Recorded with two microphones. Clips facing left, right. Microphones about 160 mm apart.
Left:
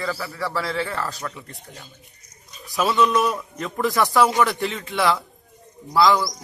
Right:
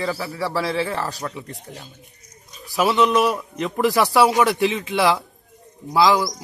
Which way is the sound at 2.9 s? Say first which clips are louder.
Right 2 dB; 20° right (ahead or behind).